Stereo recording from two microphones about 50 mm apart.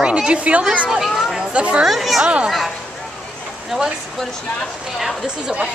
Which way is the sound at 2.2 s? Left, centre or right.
Right.